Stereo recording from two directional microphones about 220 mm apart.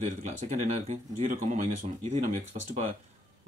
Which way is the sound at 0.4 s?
30° right (ahead or behind).